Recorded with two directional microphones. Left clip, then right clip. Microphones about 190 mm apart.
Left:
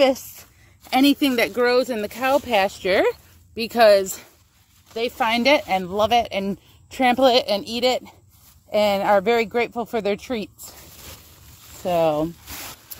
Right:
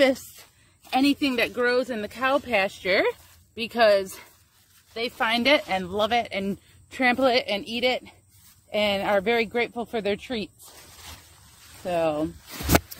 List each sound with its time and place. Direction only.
0.8 s speech: 40° left (ahead or behind)
11.8 s speech: 40° left (ahead or behind)